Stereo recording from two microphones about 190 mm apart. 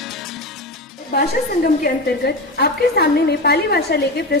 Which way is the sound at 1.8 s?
55° left (ahead or behind).